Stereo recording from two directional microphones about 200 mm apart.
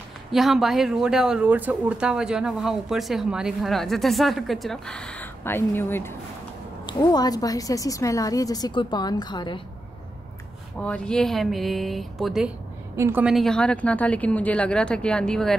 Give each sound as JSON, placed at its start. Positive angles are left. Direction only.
{"t": 0.3, "sound": "a woman's voice", "side_deg": 0}
{"t": 10.8, "sound": "speech", "side_deg": 5}
{"t": 12.9, "sound": "speech", "side_deg": -10}